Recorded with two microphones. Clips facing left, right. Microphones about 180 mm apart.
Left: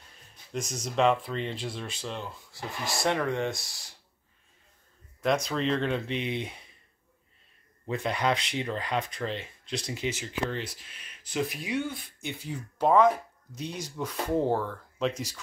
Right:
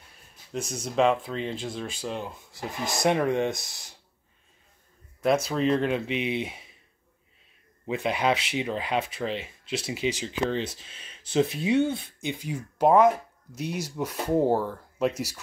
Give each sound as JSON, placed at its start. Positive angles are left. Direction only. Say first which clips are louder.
{"t": 0.5, "sound": "speech", "louder": "right 2 dB", "side_deg": -10}
{"t": 5.2, "sound": "speech", "louder": "right 3 dB", "side_deg": -5}
{"t": 8.1, "sound": "speech", "louder": "right 3 dB", "side_deg": -5}
{"t": 10.2, "sound": "speech", "louder": "right 5 dB", "side_deg": -20}